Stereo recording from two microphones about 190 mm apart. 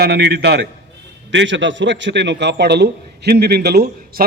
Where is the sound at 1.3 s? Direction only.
75° right (ahead or behind).